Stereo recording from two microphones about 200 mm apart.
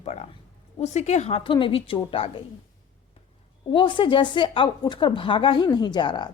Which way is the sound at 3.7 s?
25° left (ahead or behind).